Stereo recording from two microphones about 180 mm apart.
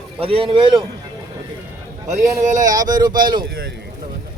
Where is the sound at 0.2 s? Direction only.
30° right (ahead or behind).